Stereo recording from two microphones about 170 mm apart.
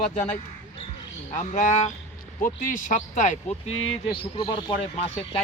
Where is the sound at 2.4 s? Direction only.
50° left (ahead or behind).